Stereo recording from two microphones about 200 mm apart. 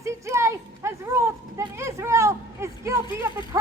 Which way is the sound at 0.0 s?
15° right (ahead or behind).